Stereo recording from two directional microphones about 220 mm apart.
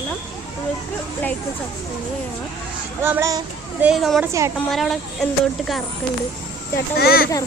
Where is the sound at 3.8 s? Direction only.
Centre (ahead or behind).